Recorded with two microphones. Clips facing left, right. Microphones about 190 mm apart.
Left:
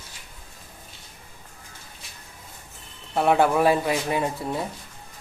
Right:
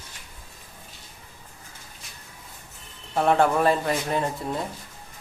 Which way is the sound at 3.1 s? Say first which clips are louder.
Left 1 dB; 5° left (ahead or behind).